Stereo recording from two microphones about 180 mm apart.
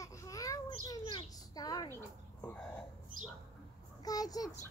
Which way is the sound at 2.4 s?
10° left (ahead or behind).